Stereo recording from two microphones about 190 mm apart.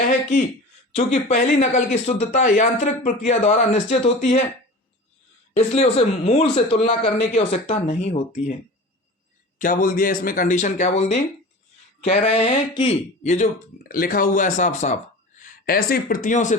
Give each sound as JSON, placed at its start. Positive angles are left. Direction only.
{"t": 0.9, "sound": "speech", "side_deg": 40}
{"t": 5.5, "sound": "speech", "side_deg": 35}
{"t": 9.6, "sound": "speech", "side_deg": 45}